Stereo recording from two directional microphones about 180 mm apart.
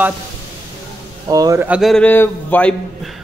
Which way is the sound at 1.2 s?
20° right (ahead or behind).